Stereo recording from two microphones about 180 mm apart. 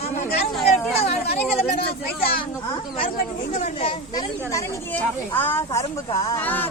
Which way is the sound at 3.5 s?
35° left (ahead or behind).